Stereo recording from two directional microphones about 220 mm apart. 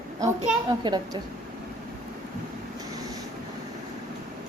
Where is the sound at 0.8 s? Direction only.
20° right (ahead or behind).